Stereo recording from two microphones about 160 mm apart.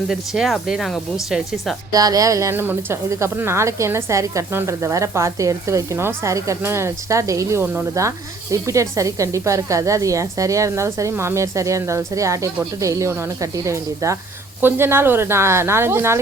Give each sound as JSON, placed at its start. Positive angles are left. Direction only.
{"t": 0.1, "sound": "speech", "side_deg": 0}
{"t": 1.9, "sound": "a woman's voice", "side_deg": -20}